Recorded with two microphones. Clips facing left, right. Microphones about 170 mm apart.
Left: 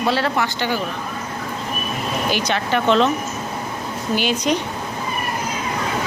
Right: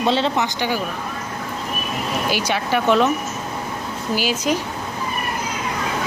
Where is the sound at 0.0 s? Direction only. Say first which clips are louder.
Right 1 dB; 20° right (ahead or behind).